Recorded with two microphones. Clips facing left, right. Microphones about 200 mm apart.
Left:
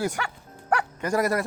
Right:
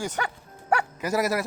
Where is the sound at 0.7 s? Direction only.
5° right (ahead or behind).